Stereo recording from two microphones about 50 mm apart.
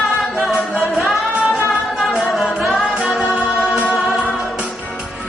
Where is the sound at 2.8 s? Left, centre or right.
Centre.